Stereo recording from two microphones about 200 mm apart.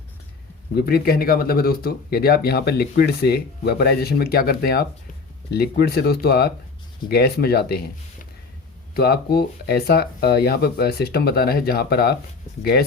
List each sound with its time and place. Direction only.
0.8 s speech: 50° left (ahead or behind)
9.0 s speech: 50° left (ahead or behind)